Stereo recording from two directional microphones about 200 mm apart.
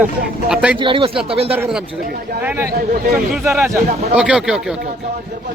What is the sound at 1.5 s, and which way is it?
Speech, 10° right (ahead or behind).